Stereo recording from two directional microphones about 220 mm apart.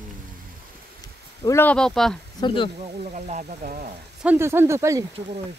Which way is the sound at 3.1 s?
35° right (ahead or behind).